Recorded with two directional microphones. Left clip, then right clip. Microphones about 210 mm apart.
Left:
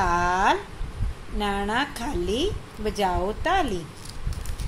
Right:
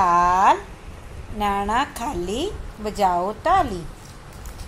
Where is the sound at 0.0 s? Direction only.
10° right (ahead or behind).